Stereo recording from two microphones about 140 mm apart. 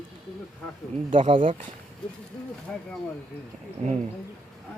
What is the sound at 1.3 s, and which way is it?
Speech, 40° right (ahead or behind).